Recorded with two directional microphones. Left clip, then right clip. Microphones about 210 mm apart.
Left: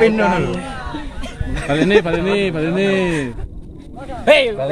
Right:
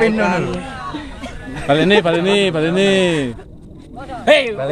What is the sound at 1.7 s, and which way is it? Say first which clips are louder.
A man's voice: right 2 dB; 55° right (ahead or behind).